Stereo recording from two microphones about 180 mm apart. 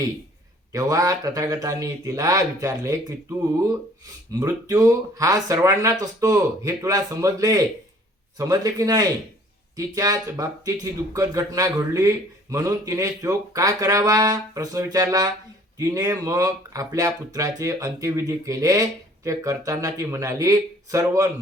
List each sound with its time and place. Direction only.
0.7 s speech: 20° right (ahead or behind)